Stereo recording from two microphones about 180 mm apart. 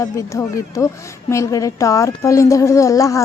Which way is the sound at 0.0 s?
15° left (ahead or behind).